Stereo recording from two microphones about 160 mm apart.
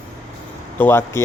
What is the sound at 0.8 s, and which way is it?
Speech, 15° left (ahead or behind).